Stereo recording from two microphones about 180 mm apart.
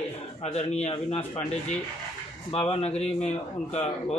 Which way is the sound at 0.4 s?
35° left (ahead or behind).